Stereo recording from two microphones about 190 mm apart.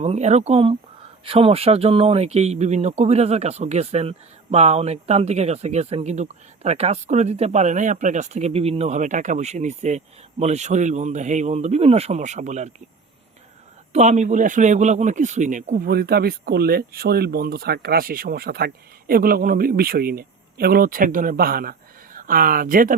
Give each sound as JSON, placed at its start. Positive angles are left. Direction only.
{"t": 0.0, "sound": "speech", "side_deg": -35}
{"t": 13.9, "sound": "speech", "side_deg": -40}